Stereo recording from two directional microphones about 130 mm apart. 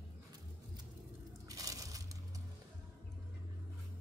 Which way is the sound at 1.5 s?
25° right (ahead or behind).